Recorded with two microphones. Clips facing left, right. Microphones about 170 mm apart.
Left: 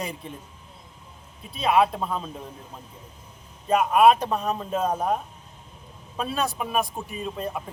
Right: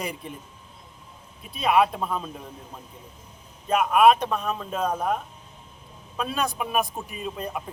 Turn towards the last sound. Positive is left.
turn(degrees=0)  # may be behind; listen again after turning